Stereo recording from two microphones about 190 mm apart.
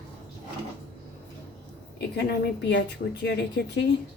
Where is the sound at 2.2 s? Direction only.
60° left (ahead or behind).